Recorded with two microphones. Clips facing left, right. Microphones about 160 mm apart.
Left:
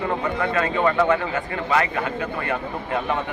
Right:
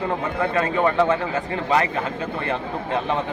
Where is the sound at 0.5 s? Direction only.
20° right (ahead or behind).